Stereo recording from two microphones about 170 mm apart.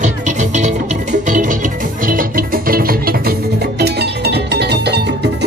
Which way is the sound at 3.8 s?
75° right (ahead or behind).